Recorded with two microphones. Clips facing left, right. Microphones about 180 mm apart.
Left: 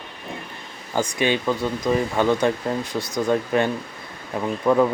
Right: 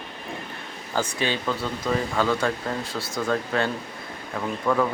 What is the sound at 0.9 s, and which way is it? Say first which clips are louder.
A man's voice: left 4 dB; 15° left (ahead or behind).